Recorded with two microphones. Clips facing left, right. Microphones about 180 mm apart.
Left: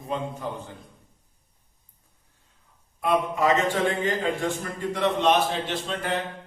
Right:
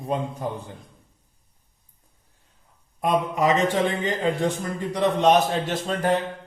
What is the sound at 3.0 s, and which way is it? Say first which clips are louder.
A man's voice: right 1 dB; 20° right (ahead or behind).